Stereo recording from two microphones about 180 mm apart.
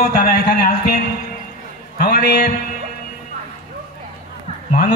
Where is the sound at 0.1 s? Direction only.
55° left (ahead or behind).